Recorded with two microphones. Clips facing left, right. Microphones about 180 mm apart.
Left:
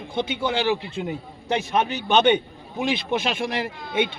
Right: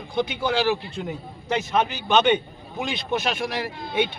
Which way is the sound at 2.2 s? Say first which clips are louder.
Left 2 dB; 20° left (ahead or behind).